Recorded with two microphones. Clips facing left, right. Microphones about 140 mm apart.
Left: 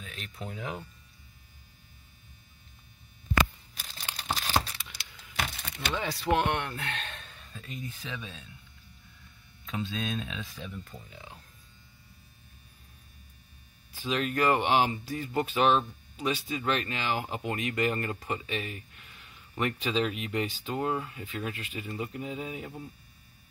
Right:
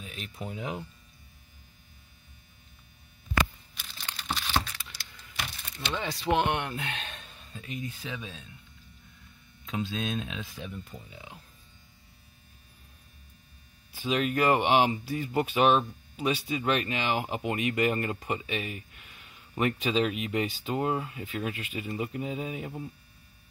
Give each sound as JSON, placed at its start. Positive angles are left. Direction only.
{"t": 0.0, "sound": "speech", "side_deg": -15}
{"t": 4.3, "sound": "a sound", "side_deg": 40}
{"t": 5.4, "sound": "a sound", "side_deg": 70}
{"t": 6.2, "sound": "speech", "side_deg": 0}
{"t": 6.5, "sound": "speech", "side_deg": -15}
{"t": 9.7, "sound": "speech", "side_deg": -5}
{"t": 13.9, "sound": "speech", "side_deg": -15}